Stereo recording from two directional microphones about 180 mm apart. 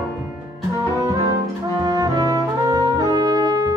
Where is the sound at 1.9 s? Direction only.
20° right (ahead or behind).